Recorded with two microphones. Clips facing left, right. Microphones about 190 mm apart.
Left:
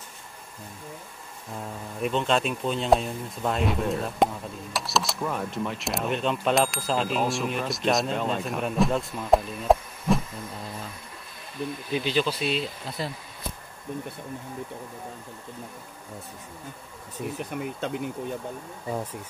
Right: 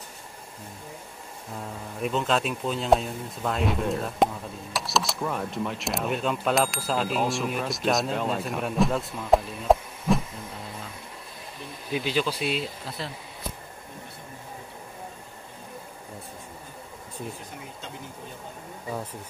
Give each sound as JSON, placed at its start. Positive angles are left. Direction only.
{"t": 2.0, "sound": "speech", "side_deg": 0}
{"t": 11.9, "sound": "speech", "side_deg": -5}
{"t": 17.4, "sound": "speech", "side_deg": 65}